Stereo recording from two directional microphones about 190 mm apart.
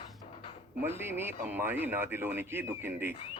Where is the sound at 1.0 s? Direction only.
10° right (ahead or behind).